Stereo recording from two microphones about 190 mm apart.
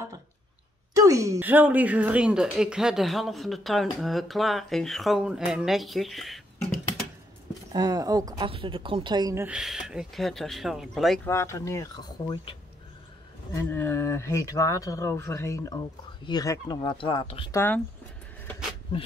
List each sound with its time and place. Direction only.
1.0 s speech: 15° right (ahead or behind); by 6.4 s centre (ahead or behind)
7.7 s a woman's voice: 20° right (ahead or behind)
9.6 s speech: 5° right (ahead or behind)
11.2 s speech: 15° left (ahead or behind)
13.6 s speech: 10° left (ahead or behind)
17.6 s speech: 10° left (ahead or behind)